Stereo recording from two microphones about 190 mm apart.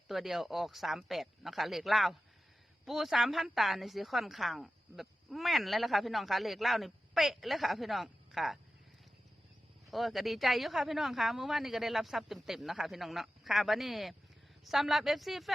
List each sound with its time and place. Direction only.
0.1 s a woman's voice: centre (ahead or behind)
9.9 s a woman's voice: centre (ahead or behind)